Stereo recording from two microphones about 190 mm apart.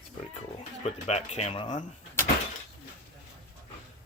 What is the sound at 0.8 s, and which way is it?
Speech, 35° left (ahead or behind).